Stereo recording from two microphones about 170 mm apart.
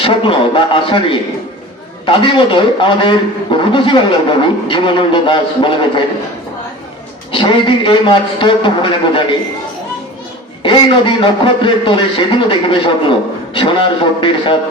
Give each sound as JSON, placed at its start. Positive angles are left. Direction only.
{"t": 0.0, "sound": "a man's voice", "side_deg": 30}
{"t": 7.3, "sound": "a man's voice", "side_deg": 30}
{"t": 10.6, "sound": "a man's voice", "side_deg": 30}